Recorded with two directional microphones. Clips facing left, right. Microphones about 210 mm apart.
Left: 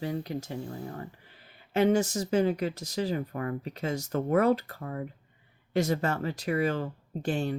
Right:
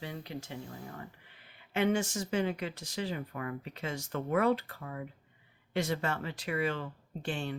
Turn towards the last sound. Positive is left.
turn(degrees=40)  # may be behind; listen again after turning